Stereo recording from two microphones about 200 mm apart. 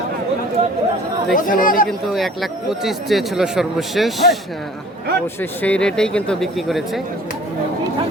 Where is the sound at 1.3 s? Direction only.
45° left (ahead or behind).